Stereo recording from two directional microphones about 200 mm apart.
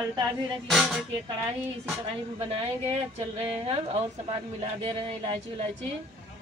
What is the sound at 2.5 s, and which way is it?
Speech, 30° right (ahead or behind).